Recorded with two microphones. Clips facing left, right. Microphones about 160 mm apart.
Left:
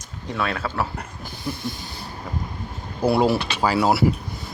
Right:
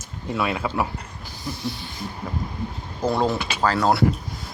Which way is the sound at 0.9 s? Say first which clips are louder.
Left 2 dB; 55° left (ahead or behind).